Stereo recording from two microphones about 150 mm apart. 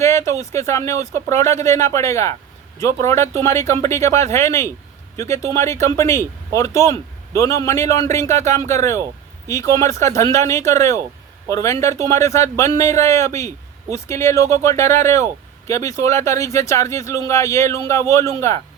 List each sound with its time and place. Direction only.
0.0 s speech: 20° left (ahead or behind)